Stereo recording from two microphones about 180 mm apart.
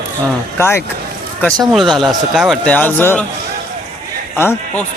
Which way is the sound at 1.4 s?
Centre (ahead or behind).